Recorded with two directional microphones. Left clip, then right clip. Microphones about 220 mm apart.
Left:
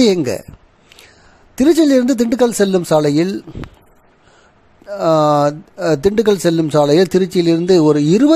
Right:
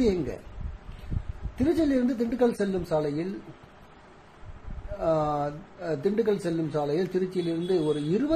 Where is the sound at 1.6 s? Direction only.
55° left (ahead or behind).